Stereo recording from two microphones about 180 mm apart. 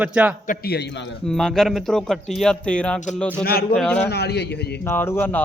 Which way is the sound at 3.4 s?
55° left (ahead or behind).